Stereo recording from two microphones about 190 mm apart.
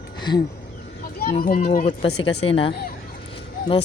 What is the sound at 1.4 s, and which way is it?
Speech, 40° left (ahead or behind).